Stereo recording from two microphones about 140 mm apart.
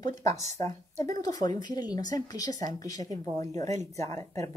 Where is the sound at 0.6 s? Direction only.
25° left (ahead or behind).